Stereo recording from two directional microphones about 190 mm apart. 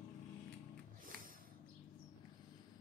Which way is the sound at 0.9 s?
45° right (ahead or behind).